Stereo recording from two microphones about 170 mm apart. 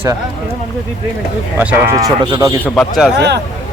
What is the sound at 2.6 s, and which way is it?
Speech, centre (ahead or behind).